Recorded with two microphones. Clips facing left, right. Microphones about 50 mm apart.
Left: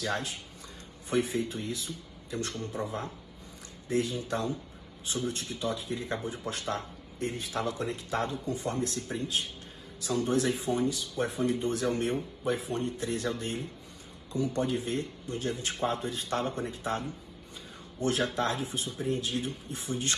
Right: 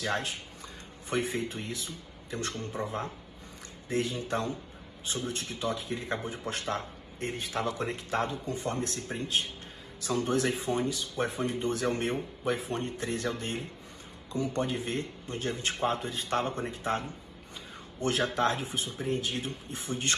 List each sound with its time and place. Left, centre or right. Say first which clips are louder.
0.0 s speech: right 1 dB; right